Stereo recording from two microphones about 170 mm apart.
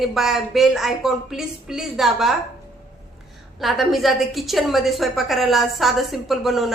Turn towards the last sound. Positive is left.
turn(degrees=0)  # may be behind; listen again after turning